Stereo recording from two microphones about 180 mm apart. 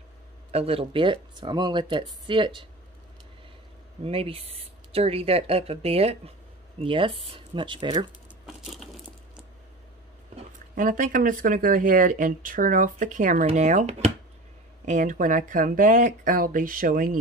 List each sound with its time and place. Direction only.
0.5 s speech: 35° right (ahead or behind)
4.0 s speech: 30° right (ahead or behind)
8.5 s a sound: centre (ahead or behind)
10.7 s speech: 45° right (ahead or behind)